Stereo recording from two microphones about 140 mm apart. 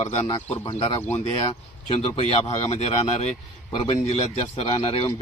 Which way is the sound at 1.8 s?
40° left (ahead or behind).